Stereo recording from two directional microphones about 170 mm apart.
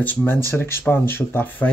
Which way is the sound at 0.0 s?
10° left (ahead or behind).